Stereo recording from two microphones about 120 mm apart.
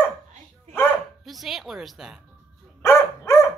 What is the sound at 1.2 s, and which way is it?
Speech, centre (ahead or behind).